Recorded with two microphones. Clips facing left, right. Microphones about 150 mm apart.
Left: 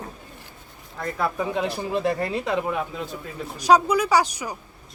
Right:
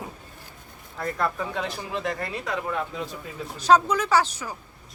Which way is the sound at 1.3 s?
15° left (ahead or behind).